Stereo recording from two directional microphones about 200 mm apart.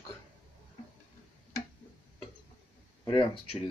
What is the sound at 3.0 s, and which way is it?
Speech, 25° left (ahead or behind).